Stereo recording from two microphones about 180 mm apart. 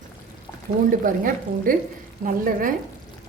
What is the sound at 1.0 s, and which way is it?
A woman's voice, 50° right (ahead or behind).